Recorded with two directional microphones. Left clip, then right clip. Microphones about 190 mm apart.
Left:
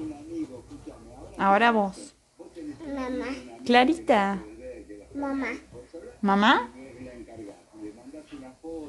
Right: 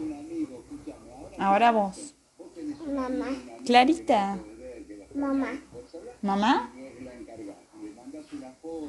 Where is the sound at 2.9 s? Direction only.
15° left (ahead or behind).